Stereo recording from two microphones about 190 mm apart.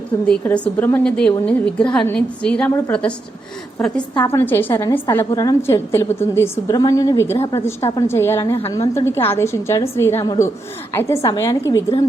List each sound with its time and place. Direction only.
0.3 s a woman's voice: 5° left (ahead or behind)
4.1 s a woman's voice: 15° left (ahead or behind)